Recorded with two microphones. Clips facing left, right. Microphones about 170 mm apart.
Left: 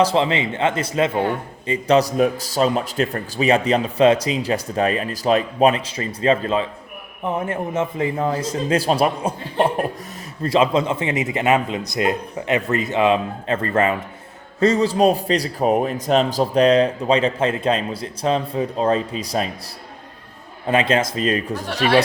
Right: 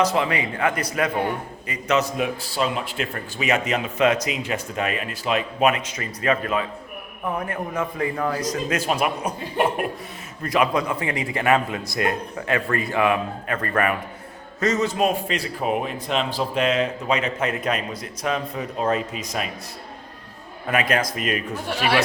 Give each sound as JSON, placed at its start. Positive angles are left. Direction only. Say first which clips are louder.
{"t": 0.0, "sound": "a man's voice", "louder": "left 3 dB", "side_deg": 30}
{"t": 20.7, "sound": "a man's voice", "louder": "left 4 dB", "side_deg": 25}